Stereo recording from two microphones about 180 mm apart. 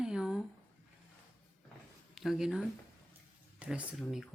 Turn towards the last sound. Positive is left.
turn(degrees=0)  # may be behind; listen again after turning